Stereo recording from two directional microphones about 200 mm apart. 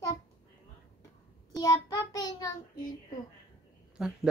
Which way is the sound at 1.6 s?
15° left (ahead or behind).